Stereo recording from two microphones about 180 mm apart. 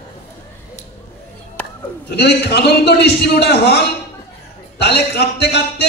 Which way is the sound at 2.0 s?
65° left (ahead or behind).